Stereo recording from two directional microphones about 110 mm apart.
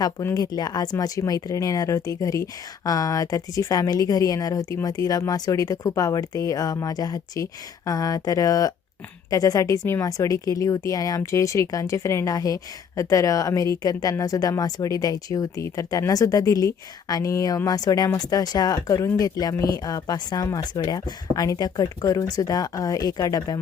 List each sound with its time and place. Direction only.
0.0 s speech: 30° left (ahead or behind)